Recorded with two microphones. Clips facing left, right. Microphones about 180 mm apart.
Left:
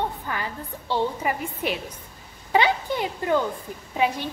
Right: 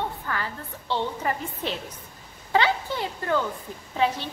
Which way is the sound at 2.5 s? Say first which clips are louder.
Left 2 dB; 15° left (ahead or behind).